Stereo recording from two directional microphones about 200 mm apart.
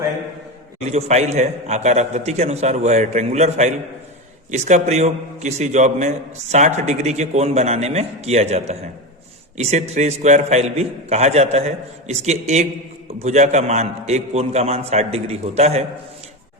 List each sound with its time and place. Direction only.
0.8 s a man's voice: 35° right (ahead or behind)